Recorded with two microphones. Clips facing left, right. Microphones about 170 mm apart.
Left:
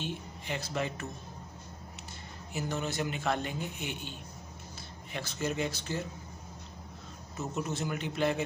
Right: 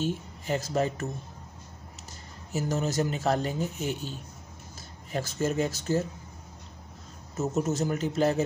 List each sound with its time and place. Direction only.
0.0 s speech: 45° right (ahead or behind)
2.5 s speech: 40° right (ahead or behind)
7.3 s speech: 45° right (ahead or behind)